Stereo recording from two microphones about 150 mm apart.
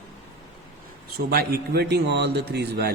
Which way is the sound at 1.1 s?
85° right.